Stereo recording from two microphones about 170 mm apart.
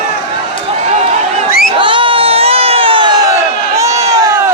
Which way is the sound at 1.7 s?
30° right (ahead or behind).